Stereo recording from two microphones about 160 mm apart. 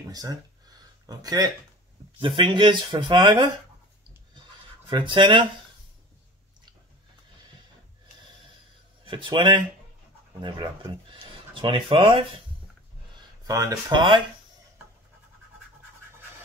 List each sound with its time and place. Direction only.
0.1 s speech: 25° right (ahead or behind)
4.8 s speech: 30° right (ahead or behind)
9.0 s speech: 30° right (ahead or behind)
13.4 s speech: 20° right (ahead or behind)